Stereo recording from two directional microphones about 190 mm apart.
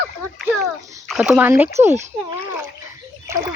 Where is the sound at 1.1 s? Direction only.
5° right (ahead or behind).